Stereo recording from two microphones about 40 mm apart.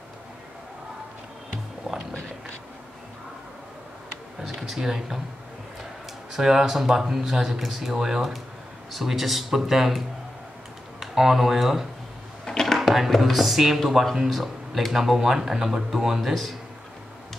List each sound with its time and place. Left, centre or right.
4.6 s speech: centre
6.3 s speech: centre
12.4 s a sound: centre
12.7 s speech: centre